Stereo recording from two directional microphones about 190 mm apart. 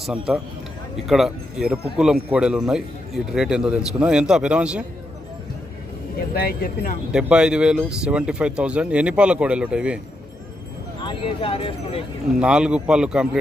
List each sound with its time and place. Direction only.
0.0 s speech: centre (ahead or behind)
6.3 s speech: 50° left (ahead or behind)
7.1 s speech: 5° right (ahead or behind)
11.0 s speech: 30° left (ahead or behind)
12.4 s speech: 5° right (ahead or behind)